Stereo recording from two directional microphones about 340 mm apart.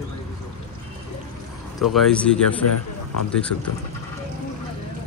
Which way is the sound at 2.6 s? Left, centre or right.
Left.